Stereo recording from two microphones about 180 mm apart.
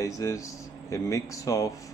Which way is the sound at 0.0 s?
20° left (ahead or behind).